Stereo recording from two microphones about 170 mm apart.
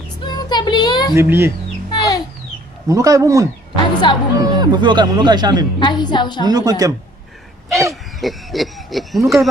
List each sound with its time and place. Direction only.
0.2 s music: 25° left (ahead or behind)
1.1 s speech: 15° right (ahead or behind)
1.9 s cat: 20° left (ahead or behind)
2.9 s speech: 20° right (ahead or behind)
4.1 s a woman's voice: 30° left (ahead or behind)
4.4 s speech: 25° right (ahead or behind)
5.8 s a woman's voice: 25° left (ahead or behind)
6.4 s speech: 25° right (ahead or behind)
7.9 s speech: centre (ahead or behind)